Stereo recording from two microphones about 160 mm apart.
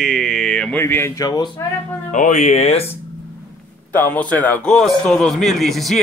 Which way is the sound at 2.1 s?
50° left (ahead or behind).